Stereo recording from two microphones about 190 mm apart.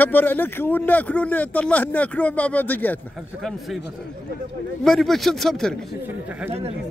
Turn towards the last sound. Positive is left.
turn(degrees=-30)  # may be behind; listen again after turning